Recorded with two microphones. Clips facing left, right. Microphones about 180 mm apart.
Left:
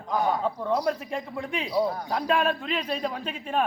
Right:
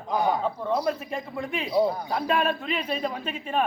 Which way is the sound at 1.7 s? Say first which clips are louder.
Right 3 dB; 10° right (ahead or behind).